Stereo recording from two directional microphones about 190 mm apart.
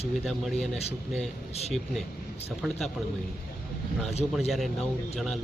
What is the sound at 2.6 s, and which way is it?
Speech, centre (ahead or behind).